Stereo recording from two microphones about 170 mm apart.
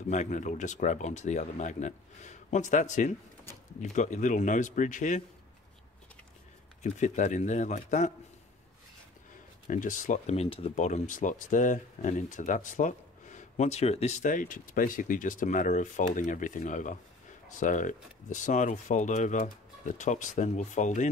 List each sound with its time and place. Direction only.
0.1 s speech: 45° left (ahead or behind)
6.8 s speech: 45° left (ahead or behind)
9.7 s speech: 50° left (ahead or behind)